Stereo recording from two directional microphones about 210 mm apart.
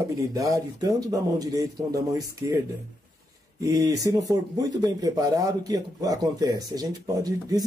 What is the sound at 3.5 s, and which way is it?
A man's voice, 15° right (ahead or behind).